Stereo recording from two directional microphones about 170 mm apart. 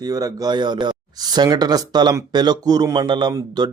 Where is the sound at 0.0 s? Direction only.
20° right (ahead or behind).